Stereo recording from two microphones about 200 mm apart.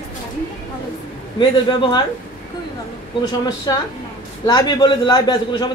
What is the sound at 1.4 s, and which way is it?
Speech, 25° left (ahead or behind).